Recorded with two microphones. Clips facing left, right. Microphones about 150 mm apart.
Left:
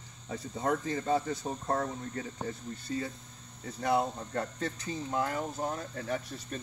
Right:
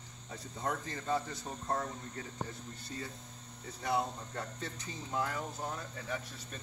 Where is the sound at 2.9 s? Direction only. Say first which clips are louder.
Left 9 dB; 90° left.